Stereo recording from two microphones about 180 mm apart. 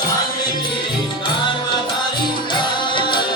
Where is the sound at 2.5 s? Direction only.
25° left (ahead or behind).